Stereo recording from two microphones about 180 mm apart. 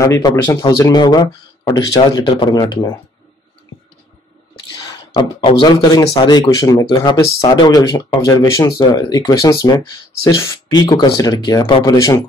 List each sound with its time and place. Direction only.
0.0 s speech: 15° left (ahead or behind)
5.6 s speech: 25° left (ahead or behind)